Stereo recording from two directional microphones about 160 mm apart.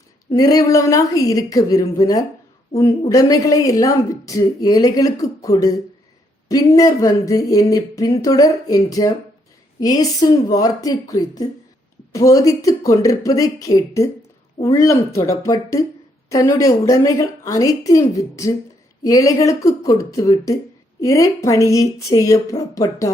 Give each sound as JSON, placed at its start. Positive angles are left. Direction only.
{"t": 0.3, "sound": "a woman's voice", "side_deg": 20}